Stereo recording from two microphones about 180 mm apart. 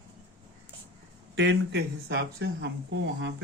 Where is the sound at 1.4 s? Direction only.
70° right (ahead or behind).